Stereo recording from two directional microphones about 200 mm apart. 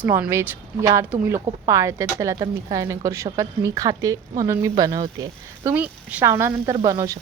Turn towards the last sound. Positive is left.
turn(degrees=-15)  # may be behind; listen again after turning